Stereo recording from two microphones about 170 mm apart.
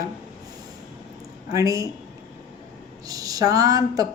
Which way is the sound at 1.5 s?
20° right (ahead or behind).